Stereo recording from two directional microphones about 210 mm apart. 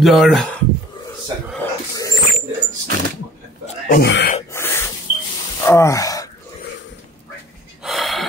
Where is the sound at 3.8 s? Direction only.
50° left (ahead or behind).